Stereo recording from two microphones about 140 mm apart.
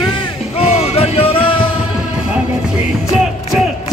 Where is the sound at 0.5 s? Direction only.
45° left (ahead or behind).